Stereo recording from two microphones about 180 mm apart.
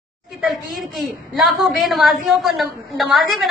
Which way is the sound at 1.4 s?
Centre (ahead or behind).